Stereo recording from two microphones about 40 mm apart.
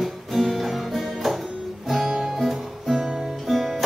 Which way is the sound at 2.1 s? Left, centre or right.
Centre.